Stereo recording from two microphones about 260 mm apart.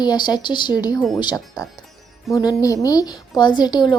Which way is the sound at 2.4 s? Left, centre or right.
Centre.